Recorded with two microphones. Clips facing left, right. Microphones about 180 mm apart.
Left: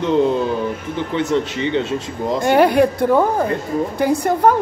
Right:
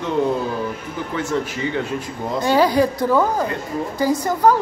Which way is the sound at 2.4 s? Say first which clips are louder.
Left 3 dB; 55° left (ahead or behind).